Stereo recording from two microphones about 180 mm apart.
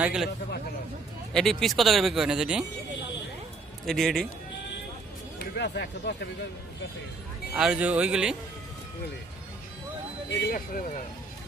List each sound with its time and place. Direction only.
0.0 s speech: 5° right (ahead or behind)
1.3 s speech: 5° left (ahead or behind)
3.8 s speech: centre (ahead or behind)
5.4 s speech: 70° left (ahead or behind)
7.5 s speech: 5° right (ahead or behind)
10.5 s speech: 50° left (ahead or behind)